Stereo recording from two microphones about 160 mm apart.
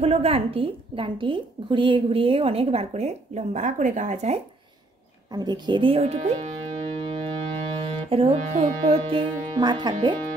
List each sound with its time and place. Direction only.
0.0 s a woman's voice: 40° right (ahead or behind)
5.3 s speech: 25° right (ahead or behind)